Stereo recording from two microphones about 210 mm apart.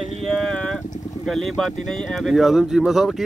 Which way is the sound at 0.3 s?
5° left (ahead or behind).